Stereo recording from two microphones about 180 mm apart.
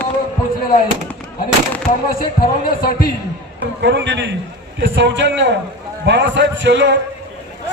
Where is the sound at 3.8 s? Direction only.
75° right (ahead or behind).